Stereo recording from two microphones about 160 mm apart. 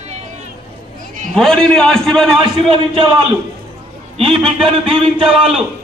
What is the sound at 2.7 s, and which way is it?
Speech, 30° right (ahead or behind).